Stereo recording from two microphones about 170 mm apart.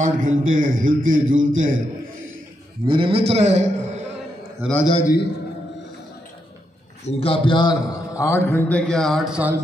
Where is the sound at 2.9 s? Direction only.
30° right (ahead or behind).